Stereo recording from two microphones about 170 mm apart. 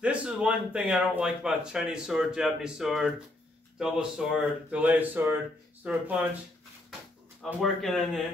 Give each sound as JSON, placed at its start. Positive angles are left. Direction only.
{"t": 0.0, "sound": "speech", "side_deg": -5}
{"t": 7.6, "sound": "speech", "side_deg": 0}